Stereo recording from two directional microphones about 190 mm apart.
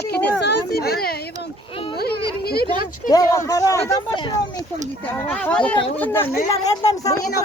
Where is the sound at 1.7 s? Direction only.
30° left (ahead or behind).